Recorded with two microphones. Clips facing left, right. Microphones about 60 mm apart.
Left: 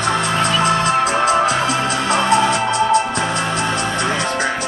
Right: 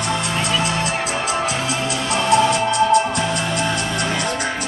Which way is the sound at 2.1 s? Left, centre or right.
Left.